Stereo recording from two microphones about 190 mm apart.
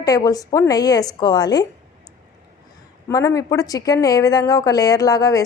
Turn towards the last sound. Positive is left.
turn(degrees=20)  # may be behind; listen again after turning